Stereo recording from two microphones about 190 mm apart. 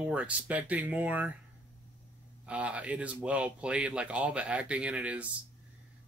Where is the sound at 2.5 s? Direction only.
5° right (ahead or behind).